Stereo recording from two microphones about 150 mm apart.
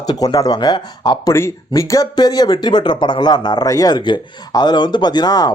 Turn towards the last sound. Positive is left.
turn(degrees=25)  # may be behind; listen again after turning